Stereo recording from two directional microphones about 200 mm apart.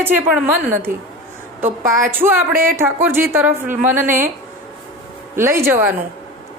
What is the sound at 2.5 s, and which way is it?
Speech, 45° right (ahead or behind).